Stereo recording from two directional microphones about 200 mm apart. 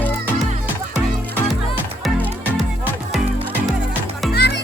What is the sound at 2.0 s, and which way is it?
Music, centre (ahead or behind).